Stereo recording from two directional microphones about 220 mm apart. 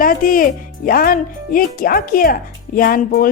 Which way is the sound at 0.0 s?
40° left (ahead or behind).